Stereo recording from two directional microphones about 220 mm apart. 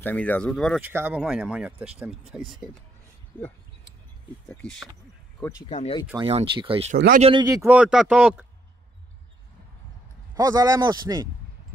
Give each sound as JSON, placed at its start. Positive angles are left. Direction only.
{"t": 0.0, "sound": "speech", "side_deg": 5}
{"t": 0.7, "sound": "speech", "side_deg": -10}
{"t": 4.5, "sound": "speech", "side_deg": 5}
{"t": 5.6, "sound": "speech", "side_deg": 25}
{"t": 6.1, "sound": "speech", "side_deg": -25}
{"t": 7.4, "sound": "speech", "side_deg": -10}
{"t": 10.3, "sound": "a man's voice", "side_deg": -15}